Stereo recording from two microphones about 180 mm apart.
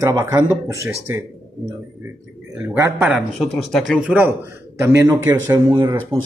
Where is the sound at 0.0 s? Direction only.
15° right (ahead or behind).